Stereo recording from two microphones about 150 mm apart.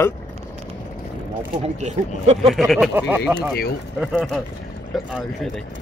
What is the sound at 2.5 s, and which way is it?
Speech, centre (ahead or behind).